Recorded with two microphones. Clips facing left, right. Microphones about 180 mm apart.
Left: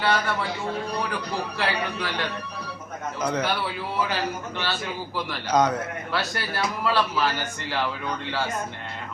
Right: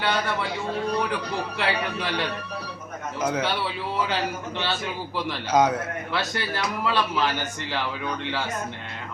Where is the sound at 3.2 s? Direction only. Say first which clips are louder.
Right 1 dB; 5° right (ahead or behind).